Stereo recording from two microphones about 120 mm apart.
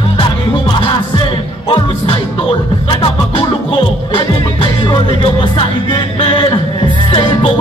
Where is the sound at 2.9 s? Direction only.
45° left (ahead or behind).